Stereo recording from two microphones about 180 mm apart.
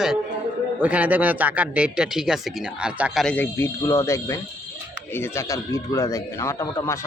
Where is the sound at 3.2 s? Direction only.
10° left (ahead or behind).